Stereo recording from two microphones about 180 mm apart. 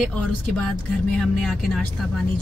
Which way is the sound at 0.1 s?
5° left (ahead or behind).